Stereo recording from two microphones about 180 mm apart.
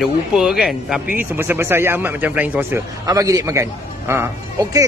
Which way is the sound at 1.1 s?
10° right (ahead or behind).